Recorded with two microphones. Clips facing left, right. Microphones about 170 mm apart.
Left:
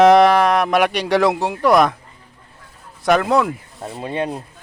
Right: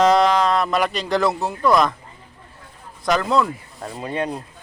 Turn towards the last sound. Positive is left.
turn(degrees=30)  # may be behind; listen again after turning